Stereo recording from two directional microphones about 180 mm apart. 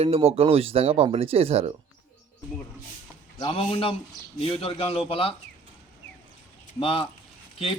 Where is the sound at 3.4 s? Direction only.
30° left (ahead or behind).